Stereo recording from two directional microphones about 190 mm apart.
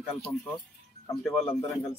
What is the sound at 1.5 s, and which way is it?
Speech, 30° left (ahead or behind).